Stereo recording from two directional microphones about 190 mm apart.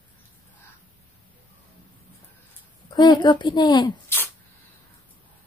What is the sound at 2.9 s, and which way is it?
Speech, 25° left (ahead or behind).